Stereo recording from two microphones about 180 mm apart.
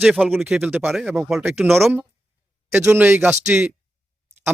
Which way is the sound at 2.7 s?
15° right (ahead or behind).